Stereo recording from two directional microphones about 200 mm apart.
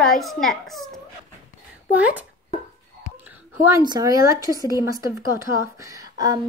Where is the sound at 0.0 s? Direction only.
Centre (ahead or behind).